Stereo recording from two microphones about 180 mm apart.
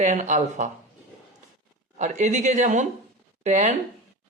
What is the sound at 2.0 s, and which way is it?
Speech, 40° right (ahead or behind).